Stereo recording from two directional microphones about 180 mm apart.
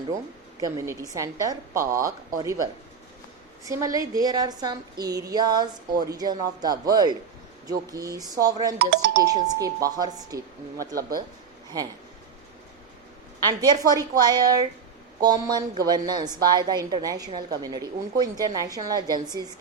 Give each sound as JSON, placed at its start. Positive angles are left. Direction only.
{"t": 0.6, "sound": "a woman's voice", "side_deg": -20}
{"t": 8.8, "sound": "speech", "side_deg": -70}
{"t": 9.2, "sound": "a woman's voice", "side_deg": -20}
{"t": 13.5, "sound": "a woman's voice", "side_deg": -20}